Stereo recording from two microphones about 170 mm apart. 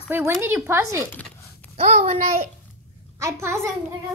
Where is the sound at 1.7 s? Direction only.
40° right (ahead or behind).